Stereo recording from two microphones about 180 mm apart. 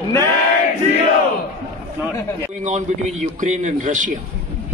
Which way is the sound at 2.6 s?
40° right (ahead or behind).